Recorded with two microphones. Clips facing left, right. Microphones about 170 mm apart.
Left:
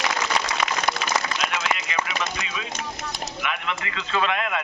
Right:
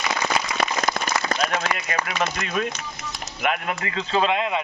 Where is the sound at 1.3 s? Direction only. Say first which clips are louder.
Right 2 dB; 45° right (ahead or behind).